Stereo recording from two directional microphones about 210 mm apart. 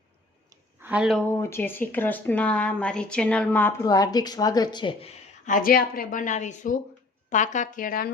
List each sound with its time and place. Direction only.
0.5 s a sound: 10° right (ahead or behind)
1.3 s speech: 10° left (ahead or behind)
5.5 s a woman's voice: 40° left (ahead or behind)